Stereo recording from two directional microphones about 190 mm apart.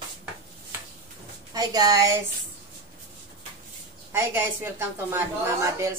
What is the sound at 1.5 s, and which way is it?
Speech, 20° right (ahead or behind).